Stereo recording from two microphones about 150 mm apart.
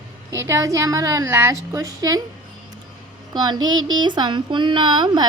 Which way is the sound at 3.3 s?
25° right (ahead or behind).